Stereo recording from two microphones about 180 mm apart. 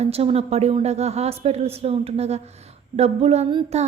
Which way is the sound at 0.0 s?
35° right (ahead or behind).